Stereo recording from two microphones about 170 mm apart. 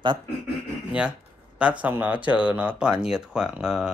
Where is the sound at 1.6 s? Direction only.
5° right (ahead or behind).